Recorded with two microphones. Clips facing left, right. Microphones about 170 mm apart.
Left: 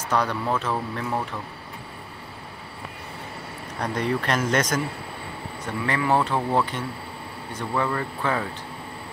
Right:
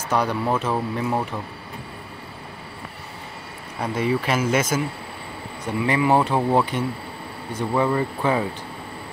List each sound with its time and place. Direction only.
0.1 s speech: 10° right (ahead or behind)
3.8 s speech: 5° right (ahead or behind)